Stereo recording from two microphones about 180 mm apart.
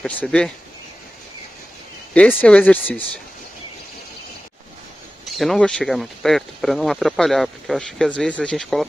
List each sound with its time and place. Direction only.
0.0 s speech: 5° left (ahead or behind)
2.1 s speech: 5° left (ahead or behind)
5.2 s speech: centre (ahead or behind)